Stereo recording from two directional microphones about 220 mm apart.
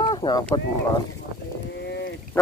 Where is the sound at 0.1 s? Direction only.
15° left (ahead or behind).